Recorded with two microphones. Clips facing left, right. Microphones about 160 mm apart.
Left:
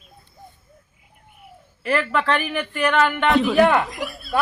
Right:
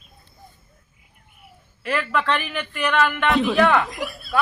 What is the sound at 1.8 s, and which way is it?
Speech, 5° left (ahead or behind).